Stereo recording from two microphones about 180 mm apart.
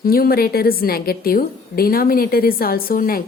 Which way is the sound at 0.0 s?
55° left (ahead or behind).